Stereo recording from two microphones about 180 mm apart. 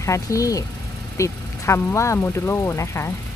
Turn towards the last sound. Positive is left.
turn(degrees=15)  # may be behind; listen again after turning